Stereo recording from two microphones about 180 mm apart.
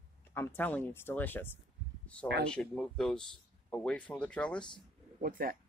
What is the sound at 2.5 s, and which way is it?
Speech, 5° left (ahead or behind).